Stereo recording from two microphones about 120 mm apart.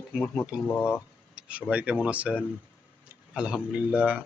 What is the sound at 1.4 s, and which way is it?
Speech, 10° right (ahead or behind).